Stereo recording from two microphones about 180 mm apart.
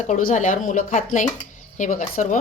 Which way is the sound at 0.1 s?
45° left (ahead or behind).